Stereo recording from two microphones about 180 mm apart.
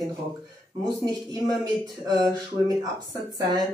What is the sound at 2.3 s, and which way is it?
Speech, 20° right (ahead or behind).